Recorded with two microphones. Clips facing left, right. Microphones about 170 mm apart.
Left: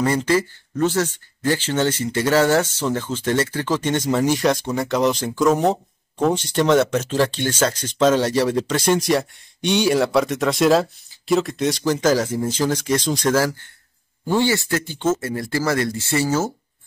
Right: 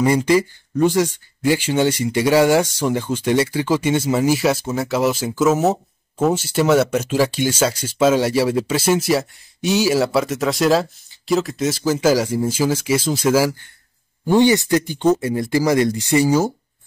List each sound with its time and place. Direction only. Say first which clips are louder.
0.0 s speech: right 3 dB; 15° right (ahead or behind)